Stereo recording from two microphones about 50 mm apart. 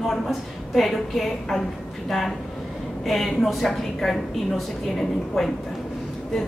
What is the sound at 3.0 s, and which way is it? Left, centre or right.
A woman's voice, centre.